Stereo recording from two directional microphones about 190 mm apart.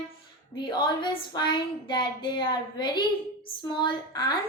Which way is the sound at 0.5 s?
25° left (ahead or behind).